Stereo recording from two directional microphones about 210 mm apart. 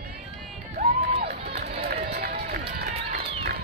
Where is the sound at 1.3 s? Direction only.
50° right (ahead or behind).